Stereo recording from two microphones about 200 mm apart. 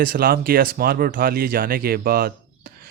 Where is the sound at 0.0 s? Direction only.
45° right (ahead or behind).